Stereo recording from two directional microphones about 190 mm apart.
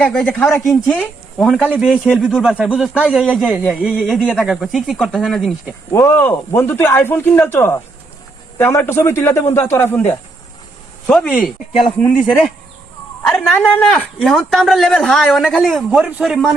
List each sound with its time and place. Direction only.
0.0 s speech: 5° left (ahead or behind)
5.9 s speech: 10° left (ahead or behind)
13.2 s speech: 5° left (ahead or behind)